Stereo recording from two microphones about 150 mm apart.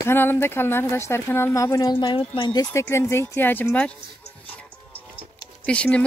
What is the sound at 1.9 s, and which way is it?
Speech, 35° left (ahead or behind).